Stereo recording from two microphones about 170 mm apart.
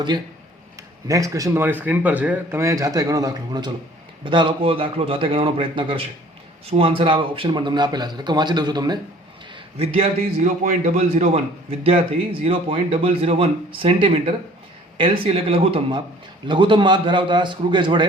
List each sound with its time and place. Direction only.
0.8 s a man's voice: 20° right (ahead or behind)
9.7 s a man's voice: 35° right (ahead or behind)